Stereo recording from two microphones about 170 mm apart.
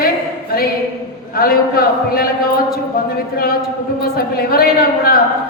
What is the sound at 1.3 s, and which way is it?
A woman's voice, 60° left (ahead or behind).